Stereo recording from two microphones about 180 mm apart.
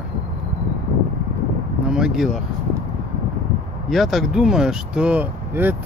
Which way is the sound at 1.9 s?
5° right (ahead or behind).